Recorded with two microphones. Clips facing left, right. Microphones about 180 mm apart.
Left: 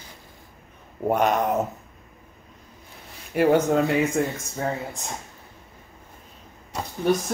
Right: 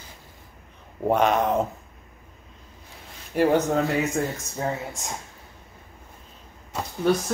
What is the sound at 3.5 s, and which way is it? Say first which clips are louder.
Speech: left 2 dB; 15° left (ahead or behind).